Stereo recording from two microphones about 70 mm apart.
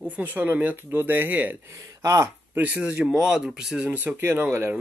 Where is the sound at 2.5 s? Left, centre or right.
Right.